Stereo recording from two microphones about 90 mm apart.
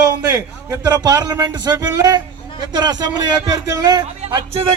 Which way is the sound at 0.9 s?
45° right (ahead or behind).